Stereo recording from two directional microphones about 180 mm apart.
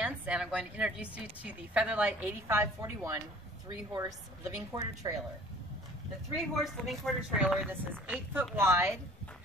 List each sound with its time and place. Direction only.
0.0 s a woman's voice: 5° right (ahead or behind)
6.3 s a woman's voice: centre (ahead or behind)